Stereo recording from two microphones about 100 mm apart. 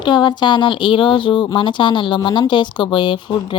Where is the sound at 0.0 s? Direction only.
50° left (ahead or behind).